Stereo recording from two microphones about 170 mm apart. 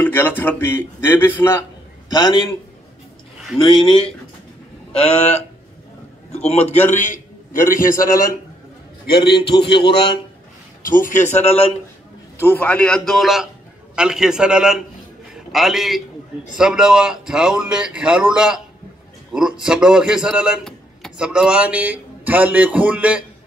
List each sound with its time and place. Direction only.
0.0 s a man's voice: 10° left (ahead or behind)
2.0 s a man's voice: 25° left (ahead or behind)
3.5 s a man's voice: 30° left (ahead or behind); by 8.3 s 55° left (ahead or behind)
9.5 s a man's voice: 30° left (ahead or behind)
10.9 s a man's voice: 50° left (ahead or behind)
12.4 s speech: 10° left (ahead or behind); by 18.6 s 5° right (ahead or behind)
19.6 s a man's voice: 5° right (ahead or behind)